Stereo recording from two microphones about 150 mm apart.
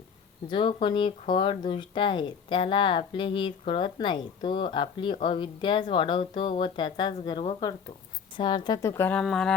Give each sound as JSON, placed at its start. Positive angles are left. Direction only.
{"t": 0.5, "sound": "speech", "side_deg": 35}
{"t": 9.2, "sound": "music", "side_deg": 5}